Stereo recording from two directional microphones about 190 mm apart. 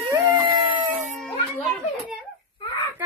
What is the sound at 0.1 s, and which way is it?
Dog, 20° right (ahead or behind).